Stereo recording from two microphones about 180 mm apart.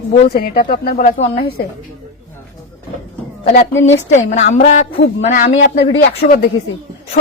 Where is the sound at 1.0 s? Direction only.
35° left (ahead or behind).